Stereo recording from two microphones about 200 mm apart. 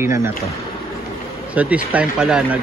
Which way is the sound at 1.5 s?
5° right (ahead or behind).